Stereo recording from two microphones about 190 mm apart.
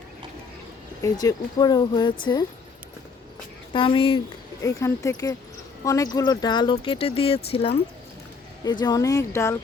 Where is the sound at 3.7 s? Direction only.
25° left (ahead or behind).